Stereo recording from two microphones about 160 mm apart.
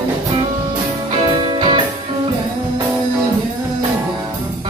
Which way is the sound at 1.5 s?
30° right (ahead or behind).